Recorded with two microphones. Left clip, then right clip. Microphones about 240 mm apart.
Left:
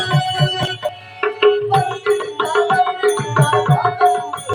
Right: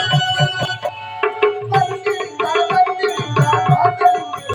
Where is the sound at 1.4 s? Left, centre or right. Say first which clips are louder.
Left 3 dB; centre.